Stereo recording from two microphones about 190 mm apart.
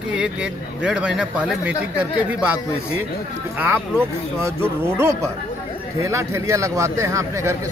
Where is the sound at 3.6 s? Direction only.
10° right (ahead or behind).